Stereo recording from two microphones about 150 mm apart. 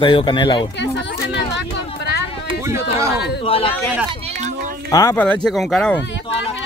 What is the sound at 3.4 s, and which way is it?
Speech, 40° left (ahead or behind).